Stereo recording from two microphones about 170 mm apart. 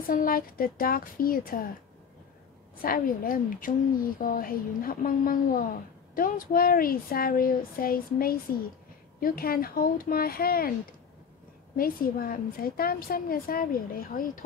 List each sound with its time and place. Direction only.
0.0 s a woman's voice: 55° left (ahead or behind)
2.8 s a woman's voice: 55° left (ahead or behind)
11.7 s a woman's voice: 60° left (ahead or behind)